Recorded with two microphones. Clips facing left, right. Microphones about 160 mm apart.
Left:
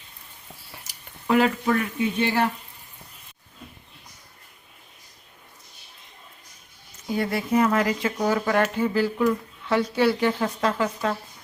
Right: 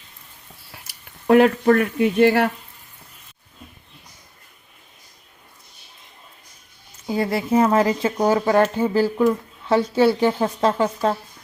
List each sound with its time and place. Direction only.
0.9 s speech: 60° right (ahead or behind)
7.1 s speech: 30° right (ahead or behind)